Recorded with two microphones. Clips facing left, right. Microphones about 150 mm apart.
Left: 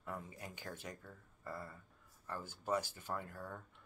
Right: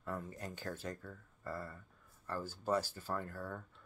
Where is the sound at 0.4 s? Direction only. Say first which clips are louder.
Right 5 dB; 15° left (ahead or behind).